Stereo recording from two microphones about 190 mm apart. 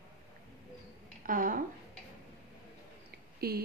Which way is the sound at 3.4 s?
55° right (ahead or behind).